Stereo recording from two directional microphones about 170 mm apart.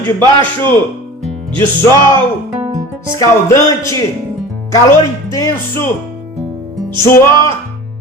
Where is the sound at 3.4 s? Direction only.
15° left (ahead or behind).